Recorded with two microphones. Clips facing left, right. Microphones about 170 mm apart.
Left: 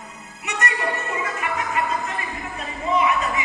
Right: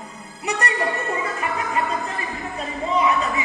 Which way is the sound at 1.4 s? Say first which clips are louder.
Left 1 dB; 30° right (ahead or behind).